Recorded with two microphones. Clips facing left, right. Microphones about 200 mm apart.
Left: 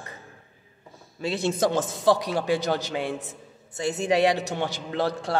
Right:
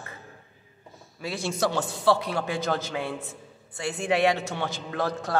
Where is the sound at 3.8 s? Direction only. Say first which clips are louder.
Left 4 dB; 20° left (ahead or behind).